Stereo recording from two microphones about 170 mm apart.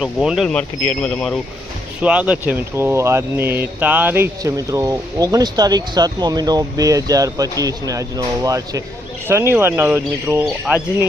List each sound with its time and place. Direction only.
0.0 s speech: 5° right (ahead or behind)
2.0 s speech: 5° right (ahead or behind)